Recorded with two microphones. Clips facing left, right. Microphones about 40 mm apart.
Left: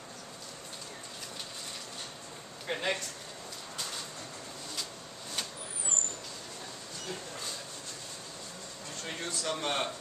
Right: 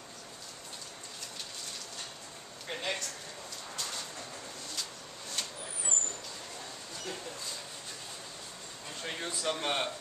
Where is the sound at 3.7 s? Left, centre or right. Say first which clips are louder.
Even; centre.